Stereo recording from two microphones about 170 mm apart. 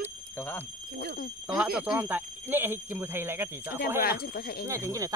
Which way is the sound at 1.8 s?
10° right (ahead or behind).